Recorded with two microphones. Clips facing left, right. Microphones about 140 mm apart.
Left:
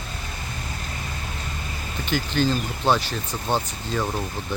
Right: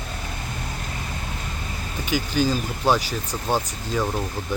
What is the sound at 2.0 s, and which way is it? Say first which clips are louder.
Speech: right 1 dB; 10° right (ahead or behind).